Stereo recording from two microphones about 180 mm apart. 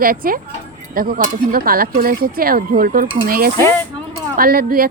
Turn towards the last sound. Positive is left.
turn(degrees=-55)  # may be behind; listen again after turning